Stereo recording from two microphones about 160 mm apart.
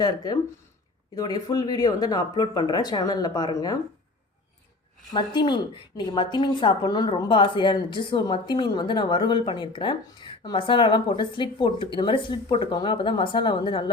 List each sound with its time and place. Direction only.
0.0 s a woman's voice: 25° left (ahead or behind)
5.1 s a woman's voice: 30° left (ahead or behind)